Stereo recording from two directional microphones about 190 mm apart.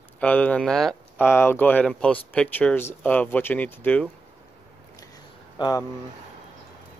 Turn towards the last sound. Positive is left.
turn(degrees=20)  # may be behind; listen again after turning